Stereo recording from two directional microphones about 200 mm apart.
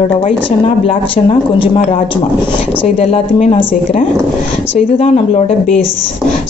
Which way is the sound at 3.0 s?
30° left (ahead or behind).